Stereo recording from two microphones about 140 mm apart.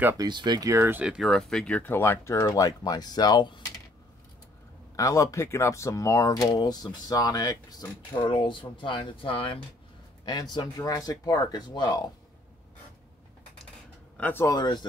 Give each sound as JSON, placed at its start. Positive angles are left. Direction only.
{"t": 0.2, "sound": "speech", "side_deg": -30}
{"t": 4.9, "sound": "speech", "side_deg": 25}
{"t": 10.2, "sound": "speech", "side_deg": 30}
{"t": 14.1, "sound": "speech", "side_deg": 10}
{"t": 14.4, "sound": "speech", "side_deg": 30}